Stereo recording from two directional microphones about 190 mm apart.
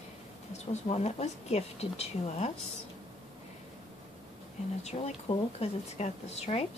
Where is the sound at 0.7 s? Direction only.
35° left (ahead or behind).